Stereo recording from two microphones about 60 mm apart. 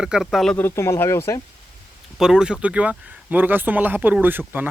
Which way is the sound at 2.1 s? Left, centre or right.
Centre.